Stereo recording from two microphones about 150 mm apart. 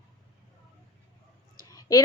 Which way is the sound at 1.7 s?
25° left (ahead or behind).